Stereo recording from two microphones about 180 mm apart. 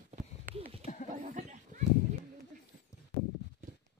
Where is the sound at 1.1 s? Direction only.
40° right (ahead or behind).